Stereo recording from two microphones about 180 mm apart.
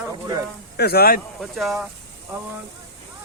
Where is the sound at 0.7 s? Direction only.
60° left (ahead or behind).